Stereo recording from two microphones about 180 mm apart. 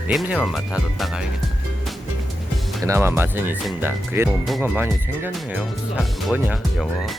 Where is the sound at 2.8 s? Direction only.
15° right (ahead or behind).